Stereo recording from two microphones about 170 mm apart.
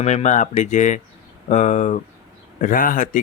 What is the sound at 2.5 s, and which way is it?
Speech, 55° left (ahead or behind).